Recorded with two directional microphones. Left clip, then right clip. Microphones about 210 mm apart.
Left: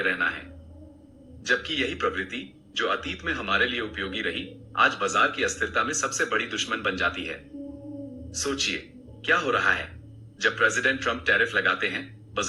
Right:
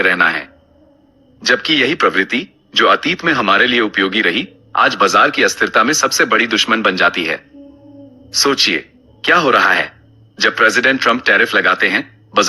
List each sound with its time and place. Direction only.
0.0 s speech: 45° right (ahead or behind)
1.5 s speech: 45° right (ahead or behind)